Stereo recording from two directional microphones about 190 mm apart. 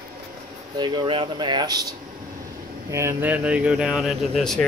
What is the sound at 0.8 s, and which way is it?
Speech, 25° right (ahead or behind).